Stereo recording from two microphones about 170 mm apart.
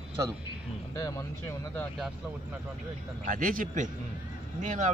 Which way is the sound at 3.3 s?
55° right (ahead or behind).